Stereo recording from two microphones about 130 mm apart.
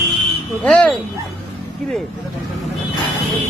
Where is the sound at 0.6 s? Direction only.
10° left (ahead or behind).